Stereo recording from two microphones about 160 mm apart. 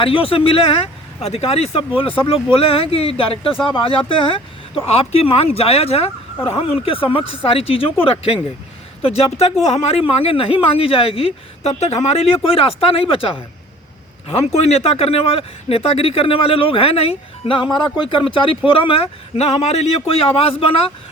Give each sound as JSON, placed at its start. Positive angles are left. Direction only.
{"t": 0.0, "sound": "a man's voice", "side_deg": 35}